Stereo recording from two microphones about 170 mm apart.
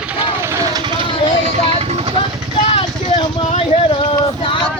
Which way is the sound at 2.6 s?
35° left (ahead or behind).